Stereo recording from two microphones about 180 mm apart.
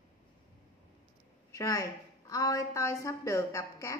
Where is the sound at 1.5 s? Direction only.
20° left (ahead or behind).